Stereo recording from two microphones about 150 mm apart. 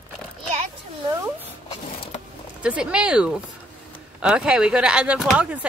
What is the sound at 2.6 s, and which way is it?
A woman's voice, 5° right (ahead or behind).